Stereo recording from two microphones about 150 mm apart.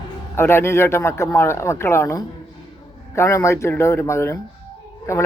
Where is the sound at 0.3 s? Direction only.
15° left (ahead or behind).